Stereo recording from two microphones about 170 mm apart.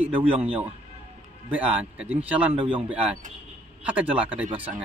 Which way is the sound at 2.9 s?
5° right (ahead or behind).